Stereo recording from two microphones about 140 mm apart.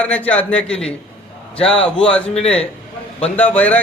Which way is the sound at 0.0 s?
10° left (ahead or behind).